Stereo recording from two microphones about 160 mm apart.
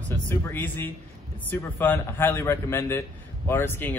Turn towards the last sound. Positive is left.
turn(degrees=15)  # may be behind; listen again after turning